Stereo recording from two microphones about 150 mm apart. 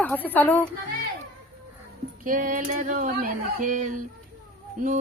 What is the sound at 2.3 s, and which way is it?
Speech, 65° right (ahead or behind).